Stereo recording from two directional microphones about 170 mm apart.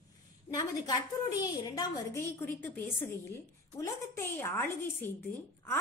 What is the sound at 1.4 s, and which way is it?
A woman's voice, 20° left (ahead or behind).